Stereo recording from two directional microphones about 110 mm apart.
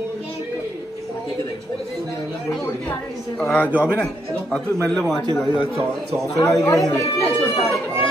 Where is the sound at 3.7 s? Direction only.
15° right (ahead or behind).